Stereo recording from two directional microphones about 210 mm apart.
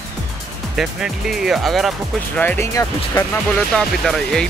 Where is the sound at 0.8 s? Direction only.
Centre (ahead or behind); by 3.3 s 15° left (ahead or behind).